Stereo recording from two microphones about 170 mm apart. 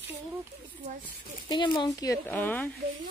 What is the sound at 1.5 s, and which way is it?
Speech, 30° left (ahead or behind).